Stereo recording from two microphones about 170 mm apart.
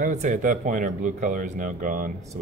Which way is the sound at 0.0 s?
45° right (ahead or behind).